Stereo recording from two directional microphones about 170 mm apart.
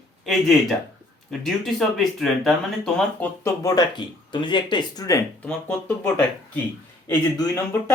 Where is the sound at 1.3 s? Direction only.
Centre (ahead or behind).